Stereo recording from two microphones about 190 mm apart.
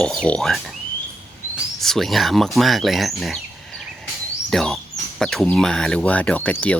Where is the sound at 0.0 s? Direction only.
5° left (ahead or behind).